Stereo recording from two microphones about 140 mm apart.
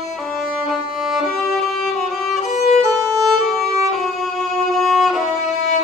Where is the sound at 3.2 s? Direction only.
Centre (ahead or behind).